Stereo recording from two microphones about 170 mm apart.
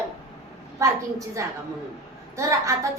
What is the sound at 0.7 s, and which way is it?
A woman's voice, 20° right (ahead or behind).